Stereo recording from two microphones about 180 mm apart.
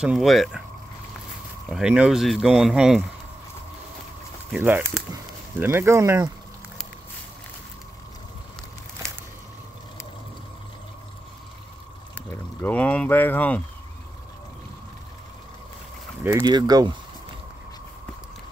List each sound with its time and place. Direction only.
0.0 s speech: 5° right (ahead or behind)
1.7 s speech: 5° right (ahead or behind)
4.5 s speech: 10° right (ahead or behind)
12.2 s speech: 10° left (ahead or behind)
16.3 s speech: 25° right (ahead or behind)